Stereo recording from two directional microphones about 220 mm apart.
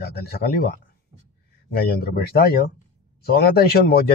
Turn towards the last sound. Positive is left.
turn(degrees=45)  # may be behind; listen again after turning